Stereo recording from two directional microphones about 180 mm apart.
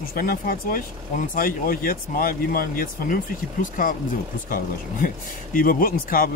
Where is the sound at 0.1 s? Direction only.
55° left (ahead or behind).